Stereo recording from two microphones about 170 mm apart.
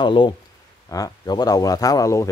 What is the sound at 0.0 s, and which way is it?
Speech, 30° left (ahead or behind).